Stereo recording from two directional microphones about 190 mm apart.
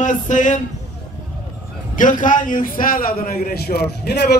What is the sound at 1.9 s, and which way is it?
A man's voice, 45° left (ahead or behind).